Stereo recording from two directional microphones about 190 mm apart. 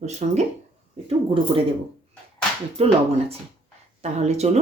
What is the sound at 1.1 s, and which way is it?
Speech, 30° right (ahead or behind).